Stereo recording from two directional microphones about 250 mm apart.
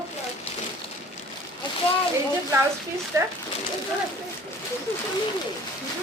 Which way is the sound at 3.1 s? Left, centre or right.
Centre.